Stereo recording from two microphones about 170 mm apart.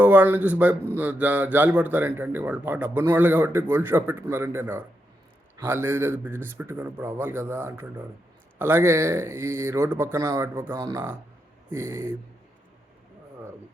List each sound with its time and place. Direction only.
0.0 s a man's voice: 10° right (ahead or behind)